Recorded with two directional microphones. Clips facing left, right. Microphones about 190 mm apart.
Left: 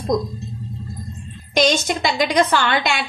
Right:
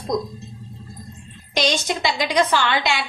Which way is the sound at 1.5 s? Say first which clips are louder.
Left 4 dB; 50° left (ahead or behind).